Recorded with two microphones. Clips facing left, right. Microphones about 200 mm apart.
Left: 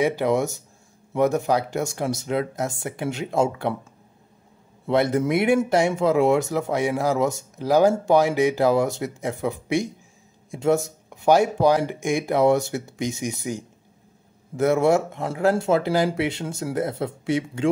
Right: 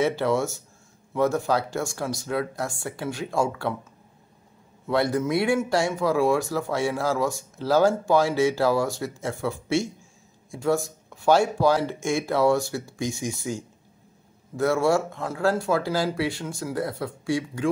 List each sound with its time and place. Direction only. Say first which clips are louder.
0.0 s speech: left 2 dB; 15° left (ahead or behind)
4.8 s speech: left 3 dB; 20° left (ahead or behind)